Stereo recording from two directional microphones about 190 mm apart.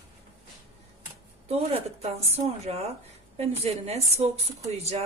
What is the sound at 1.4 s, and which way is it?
A woman's voice, 35° right (ahead or behind).